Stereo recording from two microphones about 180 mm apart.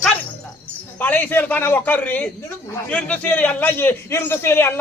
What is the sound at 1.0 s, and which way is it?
A man's voice, 10° left (ahead or behind).